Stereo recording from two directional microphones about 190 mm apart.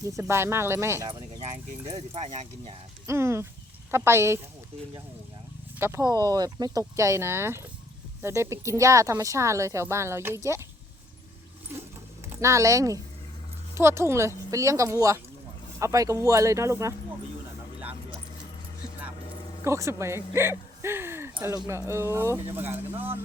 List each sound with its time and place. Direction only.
0.0 s speech: 15° right (ahead or behind)
1.8 s speech: 30° right (ahead or behind)
3.1 s speech: 15° right (ahead or behind)
5.8 s speech: 15° right (ahead or behind)
12.3 s speech: 15° right (ahead or behind)
19.6 s speech: 15° right (ahead or behind)